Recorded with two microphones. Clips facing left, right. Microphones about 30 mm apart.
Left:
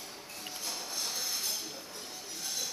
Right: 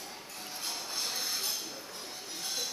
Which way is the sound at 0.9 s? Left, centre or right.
Centre.